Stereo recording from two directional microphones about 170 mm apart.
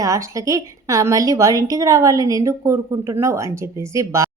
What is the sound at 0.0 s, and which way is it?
A woman's voice, 20° right (ahead or behind).